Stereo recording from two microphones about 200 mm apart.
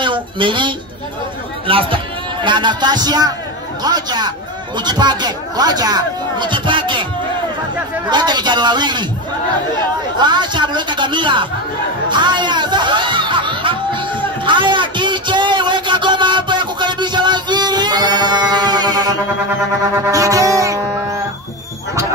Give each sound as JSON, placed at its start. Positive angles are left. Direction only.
{"t": 0.0, "sound": "speech", "side_deg": -25}
{"t": 8.1, "sound": "speech", "side_deg": -20}
{"t": 10.1, "sound": "speech", "side_deg": -20}
{"t": 12.1, "sound": "music", "side_deg": -25}